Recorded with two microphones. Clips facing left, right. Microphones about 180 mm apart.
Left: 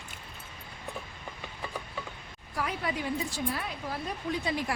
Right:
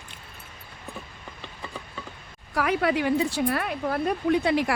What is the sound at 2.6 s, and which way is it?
Speech, 75° right (ahead or behind).